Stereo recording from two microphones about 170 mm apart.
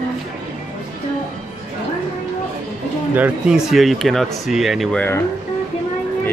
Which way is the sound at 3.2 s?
5° right (ahead or behind).